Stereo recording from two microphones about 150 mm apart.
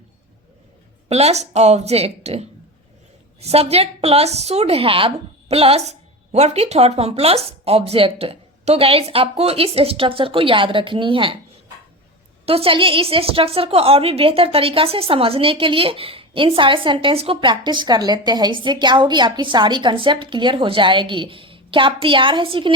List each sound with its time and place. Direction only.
1.0 s a woman's voice: 45° right (ahead or behind)
12.5 s a woman's voice: 40° right (ahead or behind)